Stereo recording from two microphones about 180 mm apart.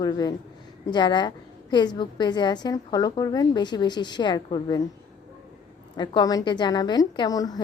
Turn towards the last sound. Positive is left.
turn(degrees=20)  # may be behind; listen again after turning